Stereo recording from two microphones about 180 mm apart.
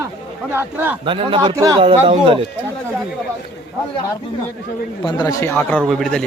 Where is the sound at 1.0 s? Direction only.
30° right (ahead or behind).